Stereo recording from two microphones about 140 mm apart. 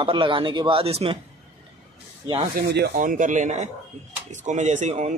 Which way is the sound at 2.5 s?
75° right (ahead or behind).